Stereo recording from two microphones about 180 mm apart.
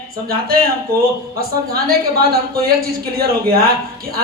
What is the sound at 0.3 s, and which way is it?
A woman's voice, 55° right (ahead or behind).